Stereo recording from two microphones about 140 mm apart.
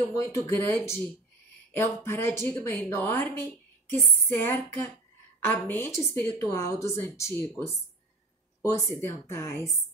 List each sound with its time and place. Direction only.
0.1 s a woman's voice: 20° left (ahead or behind)